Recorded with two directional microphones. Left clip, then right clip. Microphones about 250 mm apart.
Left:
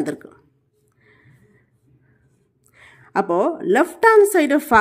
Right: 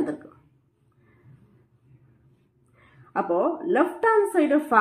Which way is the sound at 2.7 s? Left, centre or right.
Left.